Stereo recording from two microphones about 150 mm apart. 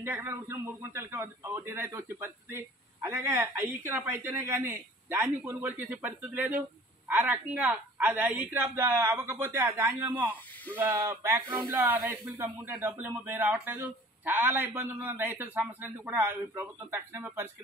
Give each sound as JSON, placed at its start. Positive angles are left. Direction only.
{"t": 0.0, "sound": "a man's voice", "side_deg": -15}